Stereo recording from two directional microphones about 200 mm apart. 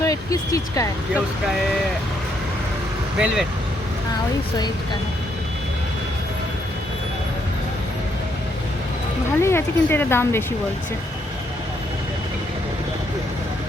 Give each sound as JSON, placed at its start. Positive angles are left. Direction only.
{"t": 0.0, "sound": "speech", "side_deg": 15}
{"t": 3.2, "sound": "speech", "side_deg": -5}
{"t": 9.4, "sound": "speech", "side_deg": 10}